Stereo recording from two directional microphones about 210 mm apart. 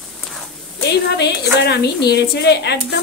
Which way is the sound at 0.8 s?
50° left (ahead or behind).